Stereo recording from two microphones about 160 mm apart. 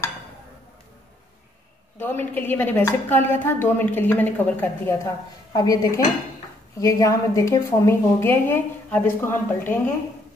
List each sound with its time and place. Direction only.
2.0 s a woman's voice: 15° left (ahead or behind)
5.5 s a woman's voice: 25° left (ahead or behind)